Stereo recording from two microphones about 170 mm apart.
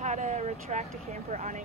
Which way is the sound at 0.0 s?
45° right (ahead or behind).